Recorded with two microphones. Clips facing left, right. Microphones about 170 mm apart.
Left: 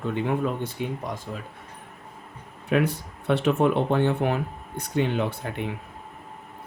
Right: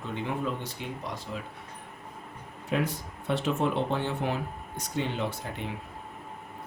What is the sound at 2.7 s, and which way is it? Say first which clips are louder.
Speech: left 6 dB; 65° left (ahead or behind).